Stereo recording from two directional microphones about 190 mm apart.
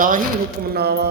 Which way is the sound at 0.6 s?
55° right (ahead or behind).